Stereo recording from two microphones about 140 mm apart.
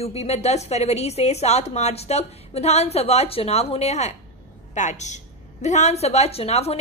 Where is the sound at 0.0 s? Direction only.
45° left (ahead or behind).